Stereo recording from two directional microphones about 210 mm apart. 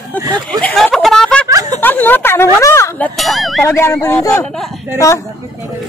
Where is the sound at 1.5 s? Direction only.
15° right (ahead or behind).